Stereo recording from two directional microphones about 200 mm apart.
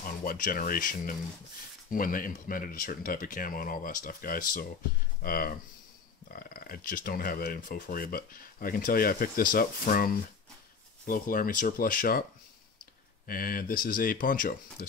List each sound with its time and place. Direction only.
0.0 s speech: 45° left (ahead or behind)
13.3 s speech: 45° left (ahead or behind)